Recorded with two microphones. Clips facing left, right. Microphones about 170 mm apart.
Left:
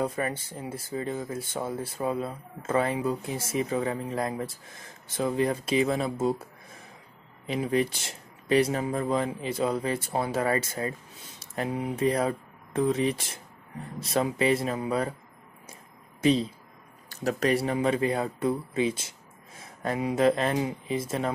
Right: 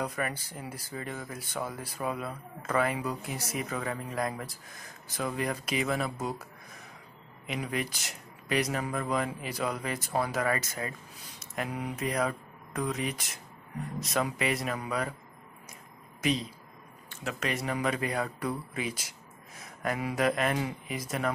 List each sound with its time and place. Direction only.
0.0 s speech: 25° left (ahead or behind)
16.2 s speech: 30° left (ahead or behind)